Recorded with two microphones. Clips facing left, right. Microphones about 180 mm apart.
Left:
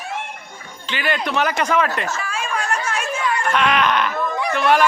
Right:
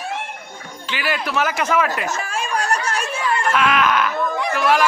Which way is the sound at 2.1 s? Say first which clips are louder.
Right 1 dB; 45° right (ahead or behind).